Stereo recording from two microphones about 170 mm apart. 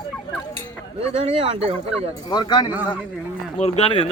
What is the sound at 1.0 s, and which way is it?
Speech, 35° right (ahead or behind).